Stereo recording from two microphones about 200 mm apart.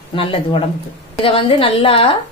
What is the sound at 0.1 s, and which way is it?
A woman's voice, 25° left (ahead or behind).